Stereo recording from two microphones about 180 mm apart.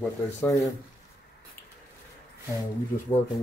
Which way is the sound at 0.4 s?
20° left (ahead or behind).